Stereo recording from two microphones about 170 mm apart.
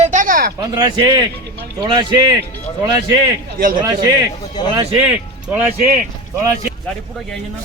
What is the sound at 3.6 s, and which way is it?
Speech, 55° right (ahead or behind).